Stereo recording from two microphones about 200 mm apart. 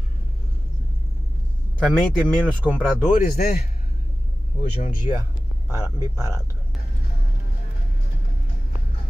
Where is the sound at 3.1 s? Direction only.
45° left (ahead or behind).